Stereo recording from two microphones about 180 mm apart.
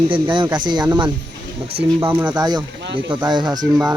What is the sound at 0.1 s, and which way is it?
Speech, 25° right (ahead or behind).